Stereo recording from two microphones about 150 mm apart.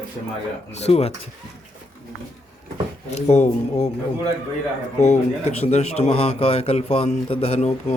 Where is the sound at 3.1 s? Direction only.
45° left (ahead or behind).